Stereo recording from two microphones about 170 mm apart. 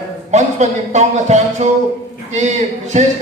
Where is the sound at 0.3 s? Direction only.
40° right (ahead or behind).